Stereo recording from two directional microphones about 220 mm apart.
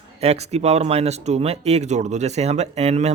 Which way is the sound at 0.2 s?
30° right (ahead or behind).